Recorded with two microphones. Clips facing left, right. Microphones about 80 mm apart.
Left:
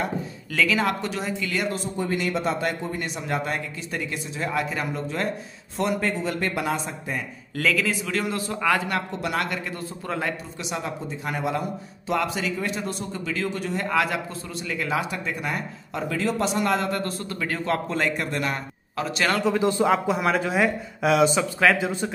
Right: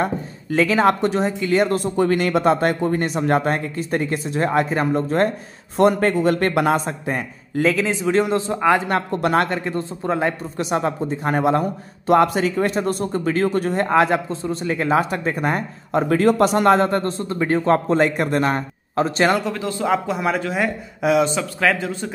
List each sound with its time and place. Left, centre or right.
0.5 s a man's voice: right
1.7 s speech: right
2.1 s speech: right
7.5 s a man's voice: right
9.1 s a man's voice: right
10.6 s a man's voice: right
19.8 s a man's voice: centre